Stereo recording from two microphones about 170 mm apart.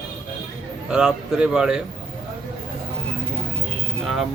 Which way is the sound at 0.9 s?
5° right (ahead or behind).